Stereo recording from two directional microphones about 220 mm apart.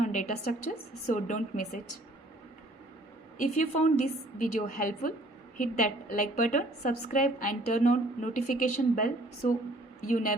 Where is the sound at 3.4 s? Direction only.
35° left (ahead or behind).